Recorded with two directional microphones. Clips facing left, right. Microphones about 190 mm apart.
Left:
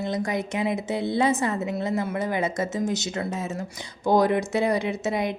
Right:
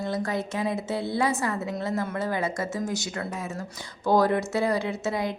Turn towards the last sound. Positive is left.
turn(degrees=20)  # may be behind; listen again after turning